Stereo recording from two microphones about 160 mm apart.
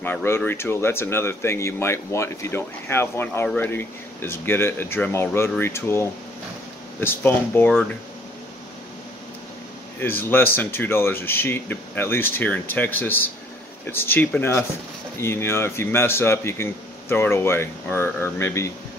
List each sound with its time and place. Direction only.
0.0 s speech: 15° left (ahead or behind)
9.9 s speech: 15° left (ahead or behind)